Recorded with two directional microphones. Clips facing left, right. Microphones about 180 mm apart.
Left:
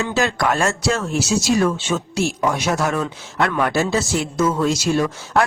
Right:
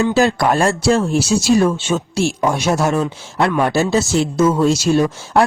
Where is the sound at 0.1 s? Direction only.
35° right (ahead or behind).